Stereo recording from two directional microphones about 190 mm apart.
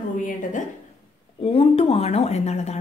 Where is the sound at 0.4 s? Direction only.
40° left (ahead or behind).